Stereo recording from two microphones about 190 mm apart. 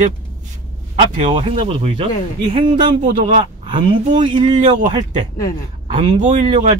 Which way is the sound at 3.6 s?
25° right (ahead or behind).